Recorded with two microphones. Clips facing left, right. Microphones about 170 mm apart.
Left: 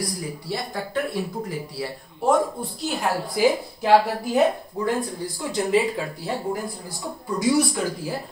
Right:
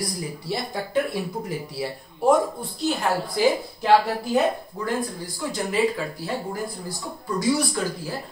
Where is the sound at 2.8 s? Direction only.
Centre (ahead or behind).